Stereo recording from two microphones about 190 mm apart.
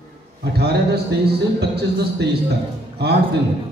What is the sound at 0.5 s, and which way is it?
Speech, 55° right (ahead or behind).